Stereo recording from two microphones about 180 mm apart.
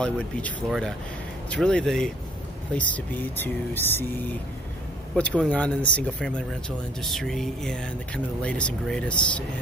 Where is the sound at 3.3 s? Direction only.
10° left (ahead or behind).